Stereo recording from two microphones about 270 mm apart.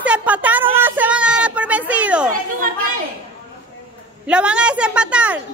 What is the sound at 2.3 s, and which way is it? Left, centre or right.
Children playing, right.